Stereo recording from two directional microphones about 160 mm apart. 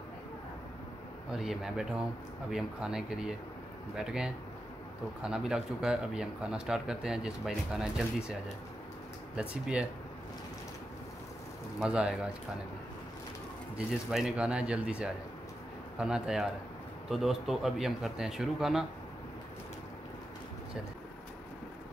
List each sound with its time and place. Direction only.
1.3 s speech: centre (ahead or behind)
11.8 s speech: 5° right (ahead or behind)
13.7 s speech: centre (ahead or behind)